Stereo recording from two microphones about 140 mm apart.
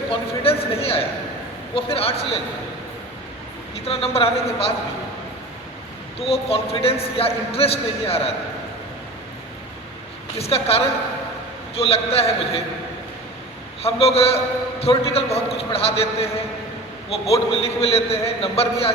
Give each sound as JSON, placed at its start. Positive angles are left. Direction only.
{"t": 0.1, "sound": "a man's voice", "side_deg": 45}
{"t": 3.8, "sound": "a man's voice", "side_deg": 45}
{"t": 6.1, "sound": "a man's voice", "side_deg": 45}
{"t": 10.3, "sound": "a man's voice", "side_deg": 45}
{"t": 13.8, "sound": "a man's voice", "side_deg": 45}